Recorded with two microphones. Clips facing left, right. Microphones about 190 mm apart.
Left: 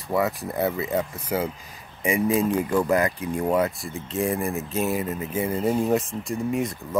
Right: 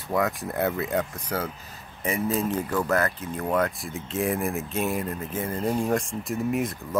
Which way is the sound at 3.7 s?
Centre (ahead or behind).